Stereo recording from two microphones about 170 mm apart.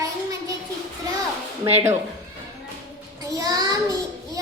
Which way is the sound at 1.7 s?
40° right (ahead or behind).